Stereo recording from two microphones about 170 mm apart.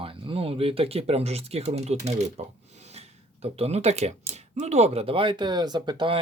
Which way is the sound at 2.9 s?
35° right (ahead or behind).